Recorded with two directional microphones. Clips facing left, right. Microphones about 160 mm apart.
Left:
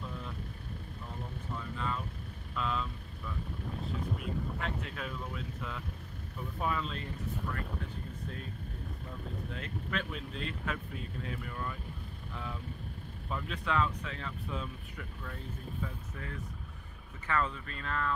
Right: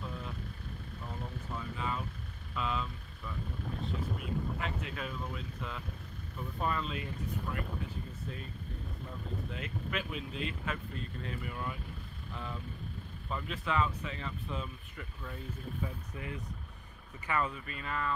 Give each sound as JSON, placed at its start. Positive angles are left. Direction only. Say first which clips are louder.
{"t": 1.8, "sound": "vehicle", "louder": "even", "side_deg": -5}
{"t": 3.8, "sound": "speech", "louder": "left 1 dB", "side_deg": 0}
{"t": 9.5, "sound": "speech", "louder": "left 2 dB", "side_deg": -5}
{"t": 11.5, "sound": "speech", "louder": "even", "side_deg": -10}
{"t": 13.3, "sound": "speech", "louder": "left 1 dB", "side_deg": 0}
{"t": 15.8, "sound": "speech", "louder": "right 1 dB", "side_deg": -15}